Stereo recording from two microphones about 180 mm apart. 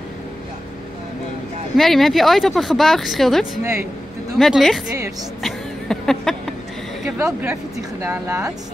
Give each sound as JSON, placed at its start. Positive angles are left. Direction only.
{"t": 1.8, "sound": "speech", "side_deg": 0}
{"t": 5.4, "sound": "a sound", "side_deg": 0}
{"t": 7.2, "sound": "speech", "side_deg": -15}